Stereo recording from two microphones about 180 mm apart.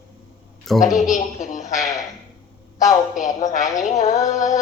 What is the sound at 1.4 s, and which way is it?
Speech, 45° left (ahead or behind).